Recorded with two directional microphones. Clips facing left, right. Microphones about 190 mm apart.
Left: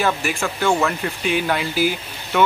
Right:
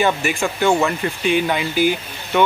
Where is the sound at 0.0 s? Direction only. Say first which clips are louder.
Right 3 dB; centre (ahead or behind).